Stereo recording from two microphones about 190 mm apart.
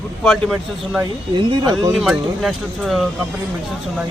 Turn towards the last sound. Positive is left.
turn(degrees=0)  # may be behind; listen again after turning